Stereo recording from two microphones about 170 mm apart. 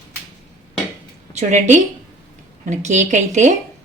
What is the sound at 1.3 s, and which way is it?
A woman's voice, 45° right (ahead or behind).